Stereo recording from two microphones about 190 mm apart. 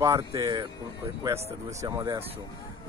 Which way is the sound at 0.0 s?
20° right (ahead or behind).